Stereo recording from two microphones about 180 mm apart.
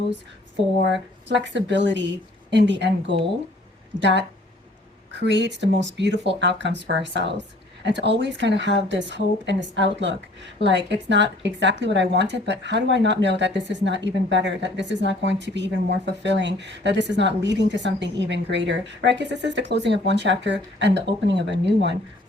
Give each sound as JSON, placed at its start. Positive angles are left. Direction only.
{"t": 1.3, "sound": "a woman's voice", "side_deg": -85}